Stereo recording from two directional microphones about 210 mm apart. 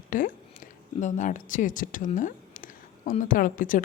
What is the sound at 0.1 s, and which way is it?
Speech, 40° left (ahead or behind).